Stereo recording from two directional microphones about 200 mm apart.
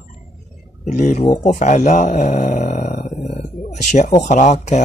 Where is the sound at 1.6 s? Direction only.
40° left (ahead or behind).